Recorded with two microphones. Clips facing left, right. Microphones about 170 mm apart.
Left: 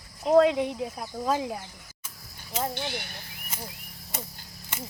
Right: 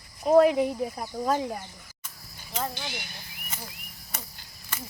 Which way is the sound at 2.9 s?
55° left (ahead or behind).